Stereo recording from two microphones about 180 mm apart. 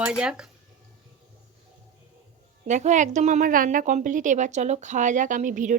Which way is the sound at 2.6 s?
40° right (ahead or behind).